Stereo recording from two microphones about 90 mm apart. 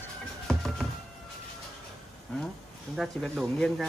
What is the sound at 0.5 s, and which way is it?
Music, centre (ahead or behind).